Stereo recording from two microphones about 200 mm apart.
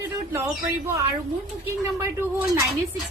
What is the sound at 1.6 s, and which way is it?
A woman's voice, 15° right (ahead or behind).